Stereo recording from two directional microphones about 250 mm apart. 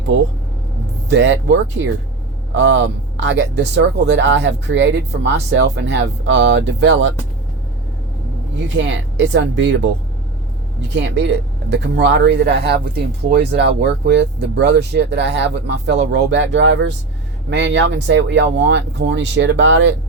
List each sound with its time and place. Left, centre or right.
1.1 s speech: right
8.7 s speech: right
10.9 s speech: right